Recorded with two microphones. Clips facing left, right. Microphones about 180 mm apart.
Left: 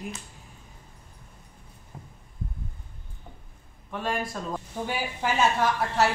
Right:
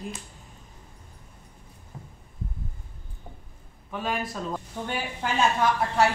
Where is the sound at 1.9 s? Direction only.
10° left (ahead or behind).